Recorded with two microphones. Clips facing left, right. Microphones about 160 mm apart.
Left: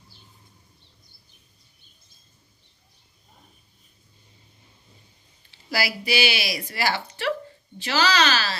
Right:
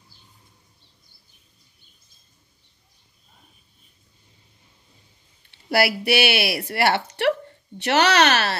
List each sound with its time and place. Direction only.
5.5 s speech: 60° right (ahead or behind)